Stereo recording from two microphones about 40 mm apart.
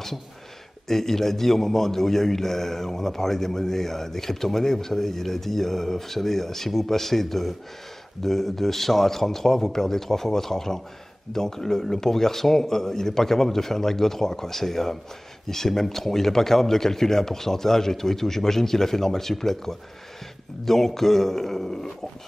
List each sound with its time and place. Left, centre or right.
0.8 s a man's voice: centre